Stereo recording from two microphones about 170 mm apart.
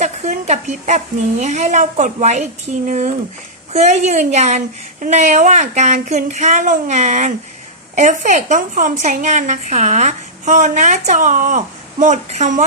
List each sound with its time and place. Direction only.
0.0 s a woman's voice: 45° right (ahead or behind)
3.7 s a woman's voice: 40° right (ahead or behind)